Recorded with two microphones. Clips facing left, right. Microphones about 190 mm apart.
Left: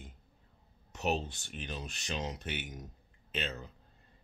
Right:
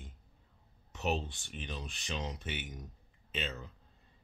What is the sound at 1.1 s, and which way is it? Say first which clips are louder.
Speech: left 1 dB; 40° left (ahead or behind).